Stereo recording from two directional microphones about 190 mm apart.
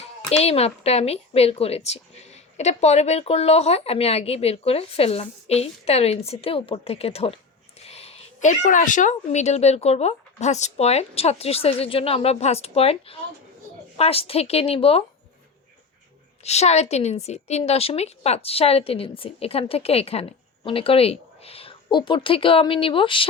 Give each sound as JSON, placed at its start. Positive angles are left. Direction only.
{"t": 0.3, "sound": "speech", "side_deg": 35}
{"t": 16.4, "sound": "a woman's voice", "side_deg": 35}